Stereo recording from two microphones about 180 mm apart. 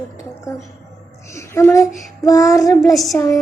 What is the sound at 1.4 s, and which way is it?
Speech, 15° left (ahead or behind).